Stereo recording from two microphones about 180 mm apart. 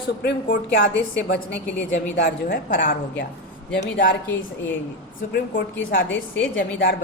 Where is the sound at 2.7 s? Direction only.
50° left (ahead or behind).